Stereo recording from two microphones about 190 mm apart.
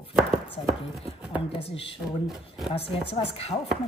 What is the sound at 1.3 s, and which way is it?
Speech, 30° left (ahead or behind).